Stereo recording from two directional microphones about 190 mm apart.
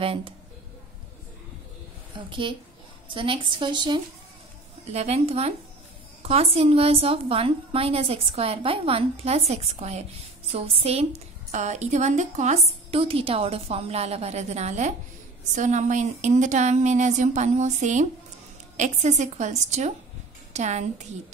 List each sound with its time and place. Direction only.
0.0 s a woman's voice: 30° right (ahead or behind)
2.1 s a woman's voice: 25° right (ahead or behind)